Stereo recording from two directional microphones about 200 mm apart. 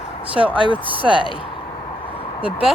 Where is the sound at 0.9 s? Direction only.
25° right (ahead or behind).